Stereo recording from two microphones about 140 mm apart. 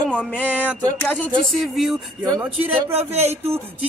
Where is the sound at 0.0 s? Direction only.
10° left (ahead or behind).